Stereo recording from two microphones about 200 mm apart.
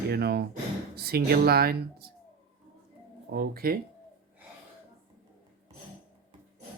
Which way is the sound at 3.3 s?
50° right (ahead or behind).